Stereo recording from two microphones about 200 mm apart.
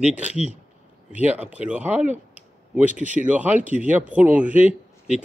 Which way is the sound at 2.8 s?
40° right (ahead or behind).